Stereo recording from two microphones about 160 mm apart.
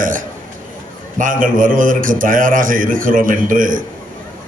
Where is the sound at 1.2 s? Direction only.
55° right (ahead or behind).